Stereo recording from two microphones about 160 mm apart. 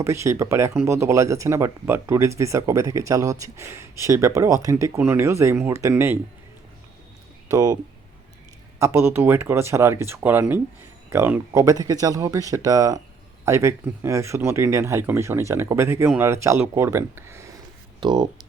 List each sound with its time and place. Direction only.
0.0 s speech: 15° right (ahead or behind)
7.5 s speech: 20° right (ahead or behind)
8.8 s speech: 15° right (ahead or behind)